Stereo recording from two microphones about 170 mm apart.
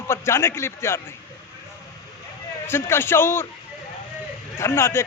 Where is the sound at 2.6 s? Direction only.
15° left (ahead or behind).